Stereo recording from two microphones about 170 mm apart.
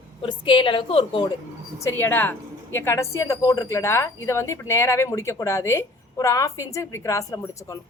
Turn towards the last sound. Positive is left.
turn(degrees=15)  # may be behind; listen again after turning